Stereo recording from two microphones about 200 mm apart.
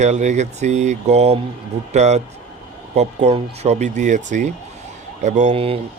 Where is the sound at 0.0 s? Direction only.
35° right (ahead or behind).